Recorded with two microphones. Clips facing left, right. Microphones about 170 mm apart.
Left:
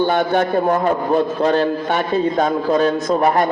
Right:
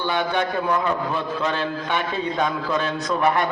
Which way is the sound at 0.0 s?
45° left (ahead or behind).